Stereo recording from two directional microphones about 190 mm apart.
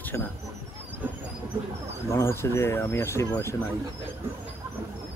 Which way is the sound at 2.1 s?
15° left (ahead or behind).